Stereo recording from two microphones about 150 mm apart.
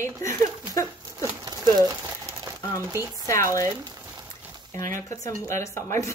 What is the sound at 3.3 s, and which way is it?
Speech, 20° left (ahead or behind).